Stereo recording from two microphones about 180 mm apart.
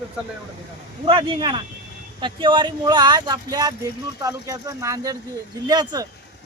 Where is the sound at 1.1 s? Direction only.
30° right (ahead or behind).